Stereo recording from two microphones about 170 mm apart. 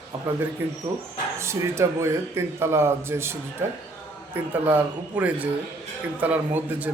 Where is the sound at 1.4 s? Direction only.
15° right (ahead or behind).